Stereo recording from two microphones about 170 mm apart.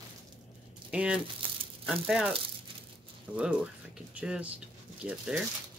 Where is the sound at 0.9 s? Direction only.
5° right (ahead or behind).